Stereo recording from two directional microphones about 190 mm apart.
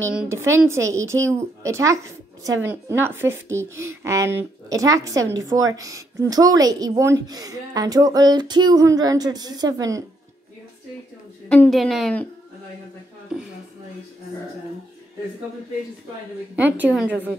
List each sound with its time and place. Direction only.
0.0 s a woman's voice: 10° right (ahead or behind)
5.8 s a sound: 15° right (ahead or behind)
11.4 s speech: 10° left (ahead or behind)
16.5 s a woman's voice: 10° right (ahead or behind)